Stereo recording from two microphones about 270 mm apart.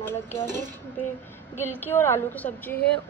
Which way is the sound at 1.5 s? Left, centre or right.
Centre.